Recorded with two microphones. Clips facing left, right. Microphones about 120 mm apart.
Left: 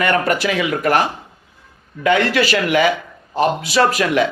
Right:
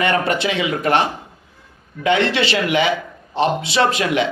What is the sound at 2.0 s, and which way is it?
Speech, 25° right (ahead or behind).